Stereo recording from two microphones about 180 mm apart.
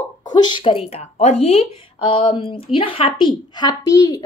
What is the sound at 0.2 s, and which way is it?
A woman's voice, 25° left (ahead or behind).